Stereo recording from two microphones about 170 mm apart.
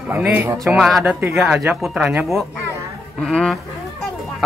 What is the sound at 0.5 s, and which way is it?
A man's voice, centre (ahead or behind).